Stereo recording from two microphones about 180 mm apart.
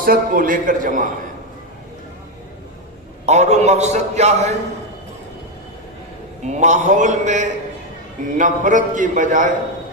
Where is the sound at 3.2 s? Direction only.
40° right (ahead or behind).